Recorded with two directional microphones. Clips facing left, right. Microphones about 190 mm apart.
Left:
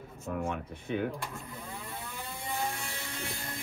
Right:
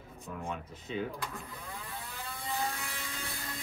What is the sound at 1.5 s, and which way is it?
Vehicle, 15° left (ahead or behind).